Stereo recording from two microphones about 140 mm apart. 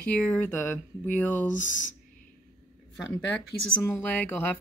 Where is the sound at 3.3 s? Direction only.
5° left (ahead or behind).